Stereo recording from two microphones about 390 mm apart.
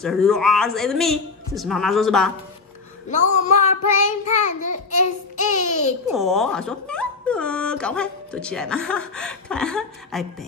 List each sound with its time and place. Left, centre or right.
0.0 s speech: centre
3.1 s child singing: centre
6.1 s speech: centre